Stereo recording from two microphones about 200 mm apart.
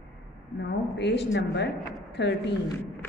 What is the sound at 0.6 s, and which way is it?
A woman's voice, 60° left (ahead or behind).